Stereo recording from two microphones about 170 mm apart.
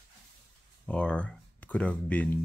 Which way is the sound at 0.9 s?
5° left (ahead or behind).